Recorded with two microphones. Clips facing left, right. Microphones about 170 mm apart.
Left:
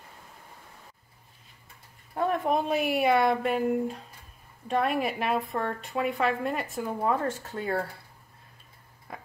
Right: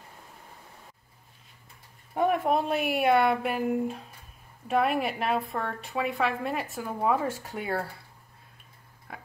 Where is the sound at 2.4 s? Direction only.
Centre (ahead or behind).